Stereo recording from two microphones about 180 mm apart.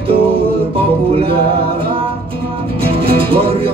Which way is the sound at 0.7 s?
30° right (ahead or behind).